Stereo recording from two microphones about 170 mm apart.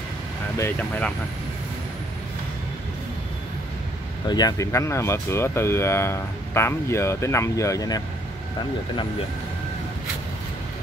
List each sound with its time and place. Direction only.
0.6 s speech: 10° left (ahead or behind)
4.3 s speech: 25° left (ahead or behind)